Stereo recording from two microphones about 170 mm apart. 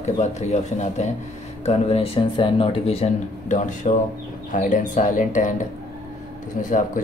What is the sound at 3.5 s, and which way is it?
Speech, 50° left (ahead or behind).